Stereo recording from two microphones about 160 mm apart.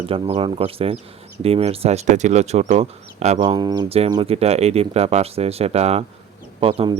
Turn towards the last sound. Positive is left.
turn(degrees=-35)  # may be behind; listen again after turning